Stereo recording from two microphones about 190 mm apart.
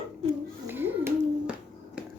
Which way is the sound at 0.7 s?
10° right (ahead or behind).